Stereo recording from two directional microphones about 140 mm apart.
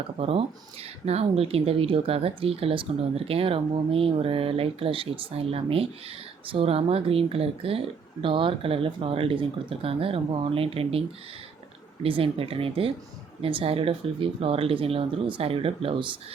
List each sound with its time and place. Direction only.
0.2 s speech: 45° right (ahead or behind)
12.0 s speech: 40° right (ahead or behind)